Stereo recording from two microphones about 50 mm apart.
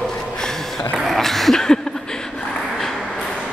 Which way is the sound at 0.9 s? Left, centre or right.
Centre.